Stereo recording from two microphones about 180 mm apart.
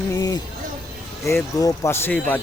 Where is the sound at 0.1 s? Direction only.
20° left (ahead or behind).